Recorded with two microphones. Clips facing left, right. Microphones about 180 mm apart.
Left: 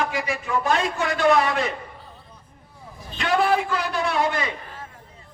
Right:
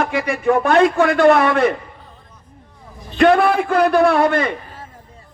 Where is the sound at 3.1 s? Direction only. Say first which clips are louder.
Right 8 dB; 60° right (ahead or behind).